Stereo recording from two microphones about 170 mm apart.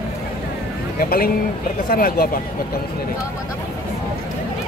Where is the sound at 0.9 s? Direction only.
60° left (ahead or behind).